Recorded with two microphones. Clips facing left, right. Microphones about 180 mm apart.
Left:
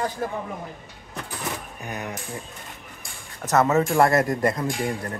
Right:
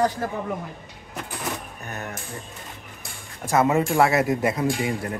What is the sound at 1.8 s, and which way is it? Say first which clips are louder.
Speech: left 5 dB; 15° left (ahead or behind).